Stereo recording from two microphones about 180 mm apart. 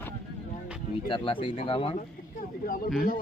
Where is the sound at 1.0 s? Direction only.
30° left (ahead or behind).